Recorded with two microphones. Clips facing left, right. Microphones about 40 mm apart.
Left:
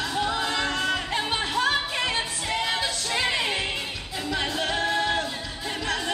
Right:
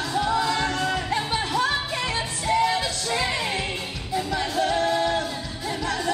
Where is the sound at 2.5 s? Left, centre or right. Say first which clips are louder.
Right 6 dB; left.